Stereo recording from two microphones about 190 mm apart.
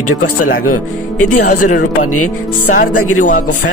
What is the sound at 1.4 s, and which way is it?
Speech, 45° left (ahead or behind).